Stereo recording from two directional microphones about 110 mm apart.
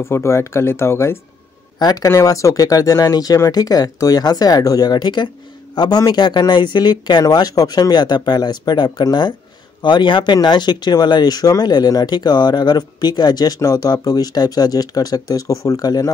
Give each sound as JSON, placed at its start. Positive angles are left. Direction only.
{"t": 0.0, "sound": "speech", "side_deg": 25}
{"t": 1.8, "sound": "speech", "side_deg": 35}